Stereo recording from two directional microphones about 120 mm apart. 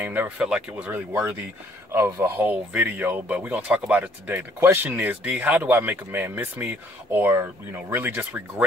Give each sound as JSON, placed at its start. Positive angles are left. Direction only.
{"t": 0.0, "sound": "speech", "side_deg": -15}
{"t": 2.5, "sound": "speech", "side_deg": -10}